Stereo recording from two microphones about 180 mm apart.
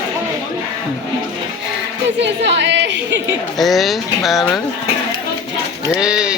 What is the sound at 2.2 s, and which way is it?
Speech, 80° right.